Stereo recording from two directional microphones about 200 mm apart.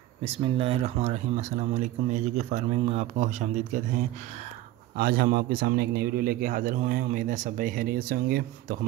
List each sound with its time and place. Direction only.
0.2 s speech: 30° right (ahead or behind)
4.9 s a man's voice: 50° right (ahead or behind)